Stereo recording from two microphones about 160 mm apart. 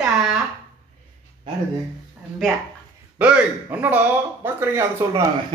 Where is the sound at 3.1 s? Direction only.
10° right (ahead or behind).